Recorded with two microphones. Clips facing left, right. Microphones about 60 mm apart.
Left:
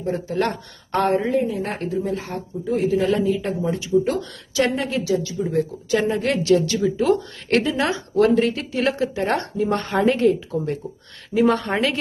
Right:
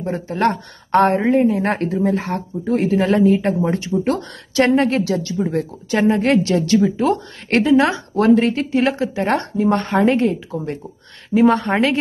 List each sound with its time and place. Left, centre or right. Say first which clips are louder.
0.0 s speech: right 4 dB; right
0.9 s a woman's voice: right 5 dB; right
5.4 s speech: right 1 dB; right